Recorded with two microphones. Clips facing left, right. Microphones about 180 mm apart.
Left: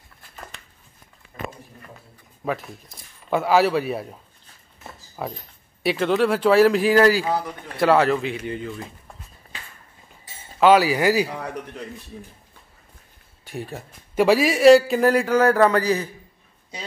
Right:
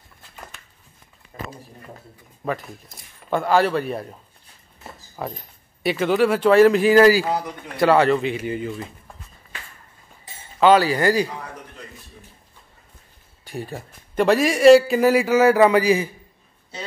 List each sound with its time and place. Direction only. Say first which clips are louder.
2.4 s a man's voice: even; centre (ahead or behind)
10.6 s speech: even; 10° left (ahead or behind)
13.4 s a man's voice: right 1 dB; centre (ahead or behind)